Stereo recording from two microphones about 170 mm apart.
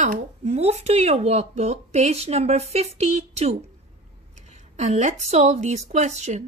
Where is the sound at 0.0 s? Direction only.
40° right (ahead or behind).